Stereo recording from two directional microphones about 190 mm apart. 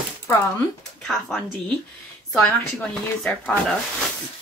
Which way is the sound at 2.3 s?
5° left (ahead or behind).